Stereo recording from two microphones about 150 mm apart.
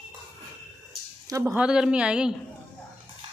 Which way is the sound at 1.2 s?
20° right (ahead or behind).